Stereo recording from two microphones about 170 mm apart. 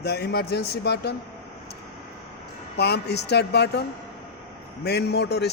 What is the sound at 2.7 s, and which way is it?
A man's voice, 75° left (ahead or behind).